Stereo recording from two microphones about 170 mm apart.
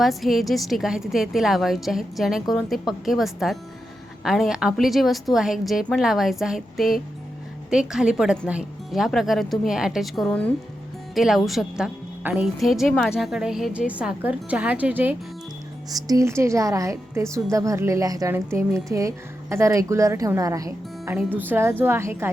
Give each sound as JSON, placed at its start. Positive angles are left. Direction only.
{"t": 0.0, "sound": "a woman's voice", "side_deg": 0}
{"t": 15.9, "sound": "a woman's voice", "side_deg": -20}